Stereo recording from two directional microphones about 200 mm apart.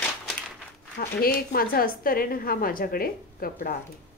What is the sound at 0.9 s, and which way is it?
A woman's voice, 50° left (ahead or behind).